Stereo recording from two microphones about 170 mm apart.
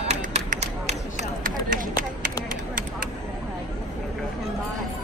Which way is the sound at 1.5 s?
55° right (ahead or behind).